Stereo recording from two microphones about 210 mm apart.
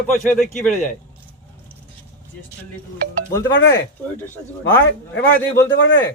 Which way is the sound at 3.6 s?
60° left (ahead or behind).